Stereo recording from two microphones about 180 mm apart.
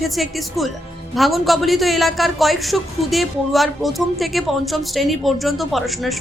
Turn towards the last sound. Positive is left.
turn(degrees=0)  # may be behind; listen again after turning